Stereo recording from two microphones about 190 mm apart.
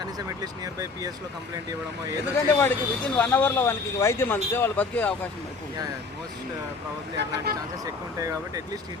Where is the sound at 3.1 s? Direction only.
5° left (ahead or behind).